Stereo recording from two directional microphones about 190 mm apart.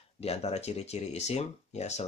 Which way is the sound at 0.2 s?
35° left (ahead or behind).